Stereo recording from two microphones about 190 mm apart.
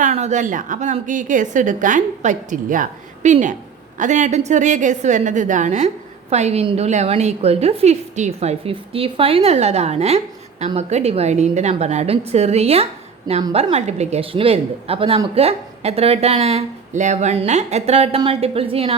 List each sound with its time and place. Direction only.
0.0 s a woman's voice: 35° right (ahead or behind)